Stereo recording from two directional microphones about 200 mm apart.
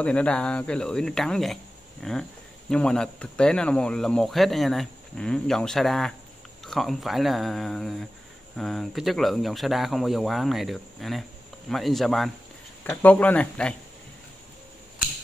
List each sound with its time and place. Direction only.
0.0 s speech: 5° left (ahead or behind)